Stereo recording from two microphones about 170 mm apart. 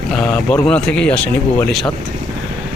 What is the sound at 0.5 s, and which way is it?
Speech, 5° left (ahead or behind).